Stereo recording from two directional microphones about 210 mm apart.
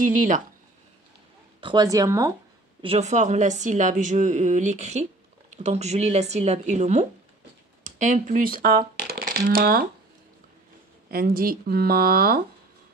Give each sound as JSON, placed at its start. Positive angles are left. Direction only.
{"t": 0.0, "sound": "a woman's voice", "side_deg": -40}
{"t": 1.6, "sound": "speech", "side_deg": -20}
{"t": 2.8, "sound": "a woman's voice", "side_deg": -30}
{"t": 11.1, "sound": "speech", "side_deg": -45}